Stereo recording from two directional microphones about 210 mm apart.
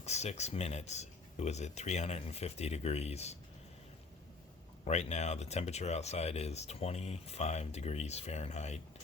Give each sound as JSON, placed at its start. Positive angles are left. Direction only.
{"t": 0.0, "sound": "speech", "side_deg": 30}
{"t": 4.9, "sound": "speech", "side_deg": 35}